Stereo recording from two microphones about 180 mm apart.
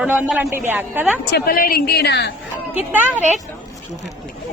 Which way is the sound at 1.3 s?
55° left (ahead or behind).